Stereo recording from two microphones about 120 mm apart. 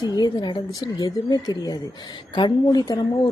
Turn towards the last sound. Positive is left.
turn(degrees=35)  # may be behind; listen again after turning